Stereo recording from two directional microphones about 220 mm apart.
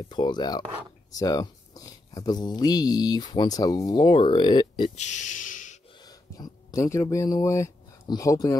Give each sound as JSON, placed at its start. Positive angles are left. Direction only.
{"t": 0.1, "sound": "speech", "side_deg": 20}
{"t": 6.0, "sound": "speech", "side_deg": 15}